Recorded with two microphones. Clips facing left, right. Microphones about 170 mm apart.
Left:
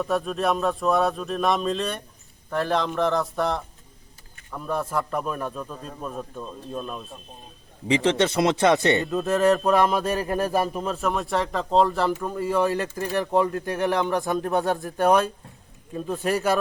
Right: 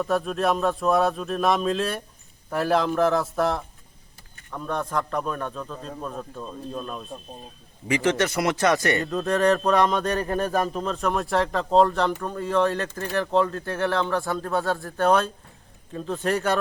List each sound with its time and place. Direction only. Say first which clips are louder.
0.0 s speech: right 1 dB; centre (ahead or behind)
7.9 s speech: left 2 dB; 20° left (ahead or behind)
9.0 s speech: left 1 dB; centre (ahead or behind)